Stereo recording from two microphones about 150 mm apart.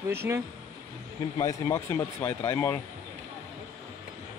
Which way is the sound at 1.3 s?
20° left (ahead or behind).